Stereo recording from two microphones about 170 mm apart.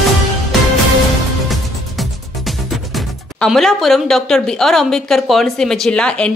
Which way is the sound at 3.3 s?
Centre (ahead or behind).